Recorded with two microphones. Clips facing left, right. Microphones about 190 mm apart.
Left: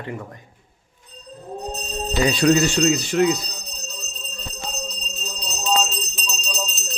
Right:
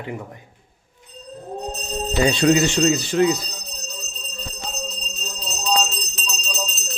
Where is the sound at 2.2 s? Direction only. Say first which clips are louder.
Even; 25° right (ahead or behind).